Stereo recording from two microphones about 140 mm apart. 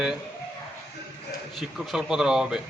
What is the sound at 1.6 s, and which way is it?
A man's voice, centre (ahead or behind).